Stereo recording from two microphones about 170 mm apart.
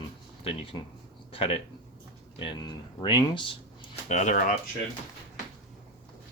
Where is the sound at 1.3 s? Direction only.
35° left (ahead or behind).